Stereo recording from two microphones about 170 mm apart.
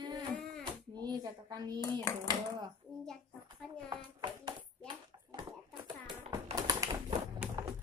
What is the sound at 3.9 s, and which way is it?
Hands, 25° right (ahead or behind).